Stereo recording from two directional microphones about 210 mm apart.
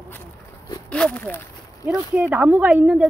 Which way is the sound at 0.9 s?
5° left (ahead or behind).